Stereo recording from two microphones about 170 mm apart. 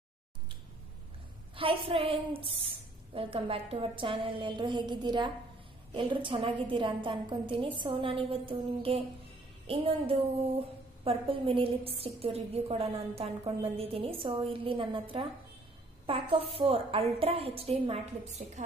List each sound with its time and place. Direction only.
1.5 s a woman's voice: 30° right (ahead or behind)